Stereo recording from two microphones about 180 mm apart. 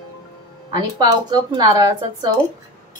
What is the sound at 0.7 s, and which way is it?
Speech, 25° right (ahead or behind).